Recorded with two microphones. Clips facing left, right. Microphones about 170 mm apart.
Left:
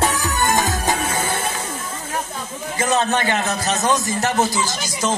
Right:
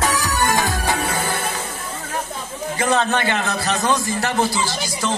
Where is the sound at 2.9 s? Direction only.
15° left (ahead or behind).